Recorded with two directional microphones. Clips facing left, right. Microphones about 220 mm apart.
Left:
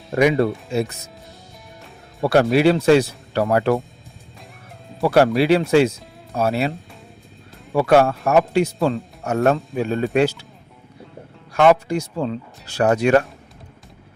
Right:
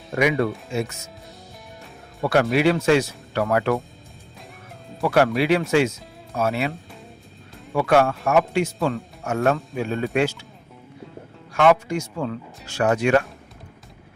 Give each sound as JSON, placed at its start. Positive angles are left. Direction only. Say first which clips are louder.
{"t": 0.1, "sound": "speech", "louder": "left 4 dB", "side_deg": 35}
{"t": 2.2, "sound": "speech", "louder": "left 4 dB", "side_deg": 35}
{"t": 5.0, "sound": "speech", "louder": "left 3 dB", "side_deg": 35}
{"t": 11.5, "sound": "speech", "louder": "left 3 dB", "side_deg": 35}